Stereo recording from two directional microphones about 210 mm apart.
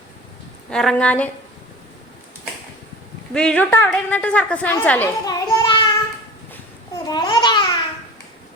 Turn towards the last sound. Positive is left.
turn(degrees=20)  # may be behind; listen again after turning